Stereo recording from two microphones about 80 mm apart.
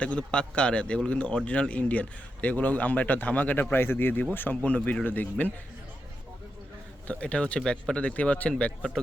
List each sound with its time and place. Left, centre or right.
0.0 s a man's voice: centre
7.1 s speech: centre